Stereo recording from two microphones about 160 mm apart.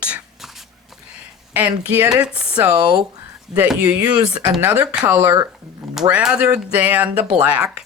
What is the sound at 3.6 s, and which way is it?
Speech, 5° right (ahead or behind).